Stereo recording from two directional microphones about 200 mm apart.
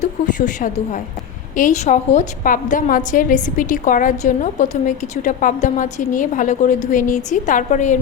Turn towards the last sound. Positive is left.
turn(degrees=40)  # may be behind; listen again after turning